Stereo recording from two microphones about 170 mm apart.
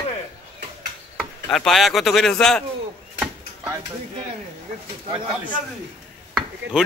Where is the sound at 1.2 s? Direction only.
Centre (ahead or behind).